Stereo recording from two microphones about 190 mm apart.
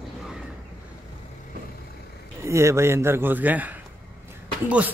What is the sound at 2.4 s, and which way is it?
Speech, 15° right (ahead or behind).